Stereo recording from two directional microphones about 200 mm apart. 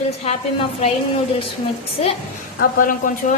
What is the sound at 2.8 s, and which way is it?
Speech, 45° left (ahead or behind).